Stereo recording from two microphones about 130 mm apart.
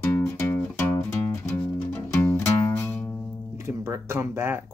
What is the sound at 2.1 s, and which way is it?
Music, 15° left (ahead or behind).